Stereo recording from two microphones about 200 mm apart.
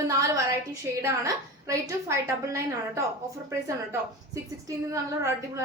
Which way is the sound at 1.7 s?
15° right (ahead or behind).